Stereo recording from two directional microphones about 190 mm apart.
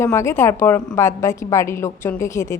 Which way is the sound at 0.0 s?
15° left (ahead or behind).